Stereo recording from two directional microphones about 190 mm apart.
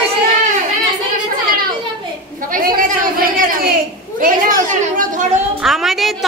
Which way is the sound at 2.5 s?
50° right (ahead or behind).